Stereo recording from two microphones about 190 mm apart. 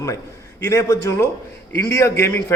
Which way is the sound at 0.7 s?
15° left (ahead or behind).